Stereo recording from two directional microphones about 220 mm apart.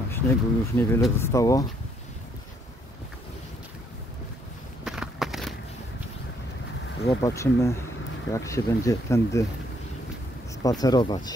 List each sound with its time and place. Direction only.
0.1 s speech: 10° left (ahead or behind)
4.8 s a sound: centre (ahead or behind)
7.1 s speech: 15° left (ahead or behind)
10.6 s speech: 15° left (ahead or behind)